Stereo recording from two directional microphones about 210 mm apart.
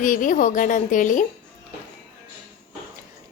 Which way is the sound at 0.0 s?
40° left (ahead or behind).